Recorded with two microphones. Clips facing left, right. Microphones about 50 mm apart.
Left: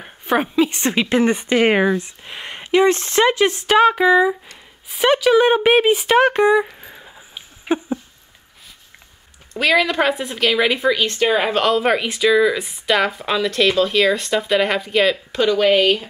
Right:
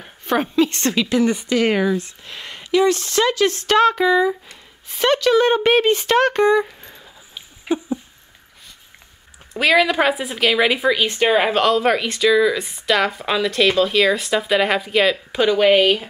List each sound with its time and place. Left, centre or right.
0.0 s a woman's voice: centre
0.9 s speech: left; by 7.0 s centre
7.0 s a sound: centre
9.5 s speech: centre